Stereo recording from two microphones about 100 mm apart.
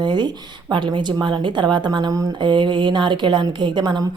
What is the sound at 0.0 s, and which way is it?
Speech, 50° right (ahead or behind).